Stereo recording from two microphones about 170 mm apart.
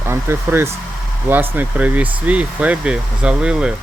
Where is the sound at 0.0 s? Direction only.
15° right (ahead or behind).